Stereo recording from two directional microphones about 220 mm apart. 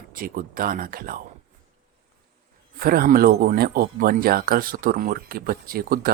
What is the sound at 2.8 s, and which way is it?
Speech, 40° right (ahead or behind).